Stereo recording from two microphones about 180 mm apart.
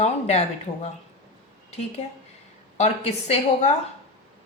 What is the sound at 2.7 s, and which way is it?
Speech, 35° left (ahead or behind).